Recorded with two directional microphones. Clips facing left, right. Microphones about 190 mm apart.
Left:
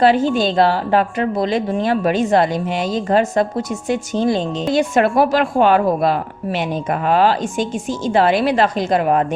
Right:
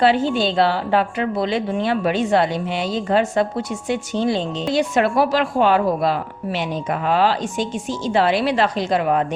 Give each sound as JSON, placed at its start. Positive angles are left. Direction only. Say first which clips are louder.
{"t": 0.0, "sound": "speech", "louder": "left 3 dB", "side_deg": 45}